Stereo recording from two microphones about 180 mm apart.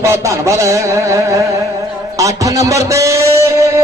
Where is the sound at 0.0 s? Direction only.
15° right (ahead or behind).